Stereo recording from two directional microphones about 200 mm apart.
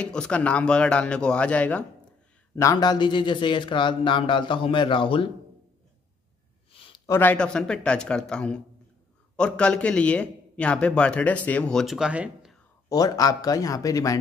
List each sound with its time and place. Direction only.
0.0 s a man's voice: 5° left (ahead or behind); by 5.3 s 25° left (ahead or behind)
6.7 s a sound: 25° left (ahead or behind)
7.1 s a man's voice: 10° left (ahead or behind)
12.9 s speech: 20° left (ahead or behind)